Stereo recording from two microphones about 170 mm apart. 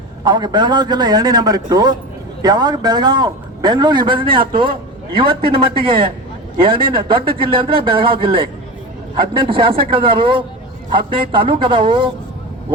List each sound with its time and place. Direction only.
0.3 s a man's voice: 25° right (ahead or behind)
9.4 s a man's voice: 30° right (ahead or behind)